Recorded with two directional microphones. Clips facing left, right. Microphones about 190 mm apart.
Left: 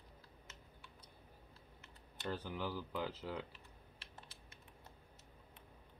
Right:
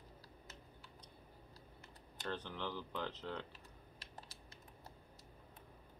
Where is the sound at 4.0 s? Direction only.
40° right (ahead or behind).